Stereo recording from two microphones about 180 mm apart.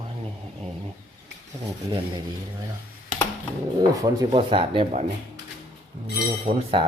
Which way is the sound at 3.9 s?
20° right (ahead or behind).